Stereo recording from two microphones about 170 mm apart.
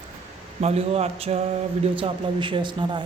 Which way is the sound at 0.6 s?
35° right (ahead or behind).